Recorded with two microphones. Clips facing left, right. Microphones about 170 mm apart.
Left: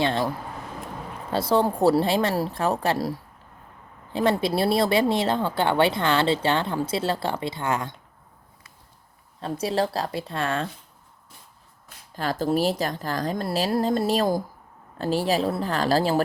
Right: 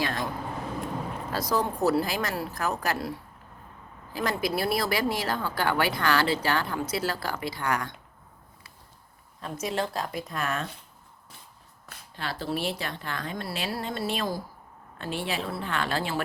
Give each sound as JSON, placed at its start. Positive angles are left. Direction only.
{"t": 0.0, "sound": "speech", "side_deg": 25}
{"t": 1.3, "sound": "speech", "side_deg": 30}
{"t": 9.4, "sound": "a woman's voice", "side_deg": 35}
{"t": 12.1, "sound": "a woman's voice", "side_deg": 45}